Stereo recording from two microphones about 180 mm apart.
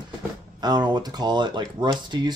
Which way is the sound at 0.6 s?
25° right (ahead or behind).